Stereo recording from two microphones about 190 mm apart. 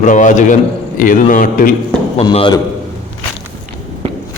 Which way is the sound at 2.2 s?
25° left (ahead or behind).